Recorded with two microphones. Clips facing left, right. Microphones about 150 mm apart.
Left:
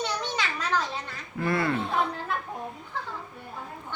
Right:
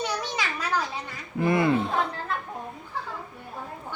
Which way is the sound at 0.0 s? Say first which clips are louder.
Right 1 dB; 10° right (ahead or behind).